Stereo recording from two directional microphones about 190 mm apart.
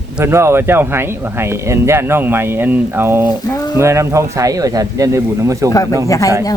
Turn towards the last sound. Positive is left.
turn(degrees=15)  # may be behind; listen again after turning